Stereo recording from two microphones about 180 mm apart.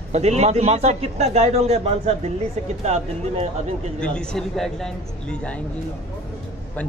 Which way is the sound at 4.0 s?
5° left (ahead or behind).